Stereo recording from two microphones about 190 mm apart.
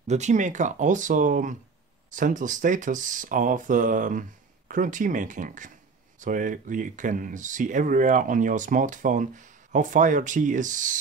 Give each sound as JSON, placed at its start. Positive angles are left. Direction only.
{"t": 0.0, "sound": "speech", "side_deg": -35}